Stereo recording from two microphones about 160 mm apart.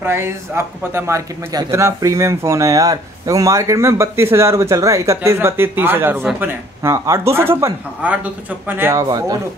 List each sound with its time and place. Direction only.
0.0 s speech: 15° right (ahead or behind)